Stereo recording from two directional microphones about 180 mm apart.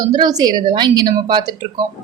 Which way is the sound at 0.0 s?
20° right (ahead or behind).